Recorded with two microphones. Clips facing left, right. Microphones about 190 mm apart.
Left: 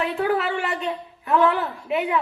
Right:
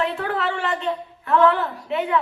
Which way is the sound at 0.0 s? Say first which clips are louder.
Left 1 dB; 20° left (ahead or behind).